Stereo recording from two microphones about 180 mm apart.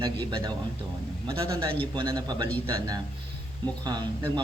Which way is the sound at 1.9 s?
25° right (ahead or behind).